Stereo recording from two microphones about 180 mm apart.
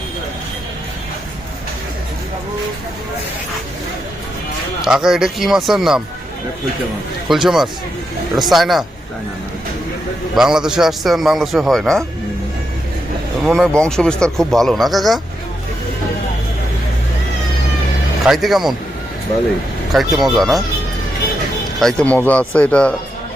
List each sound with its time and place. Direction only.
4.8 s a man's voice: 5° right (ahead or behind)
7.3 s a man's voice: centre (ahead or behind)
10.3 s a man's voice: 5° right (ahead or behind)
13.4 s a man's voice: centre (ahead or behind)
18.3 s a man's voice: centre (ahead or behind)
19.9 s a man's voice: centre (ahead or behind)
21.8 s speech: 5° left (ahead or behind)